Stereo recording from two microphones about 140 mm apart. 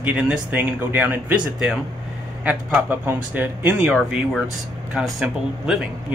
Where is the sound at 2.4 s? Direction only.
15° right (ahead or behind).